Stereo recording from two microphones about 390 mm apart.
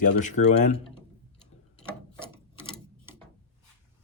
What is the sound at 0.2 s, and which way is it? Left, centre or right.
Speech, centre.